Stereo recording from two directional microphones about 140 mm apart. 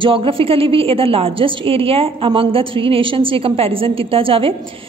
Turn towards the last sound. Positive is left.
turn(degrees=-40)  # may be behind; listen again after turning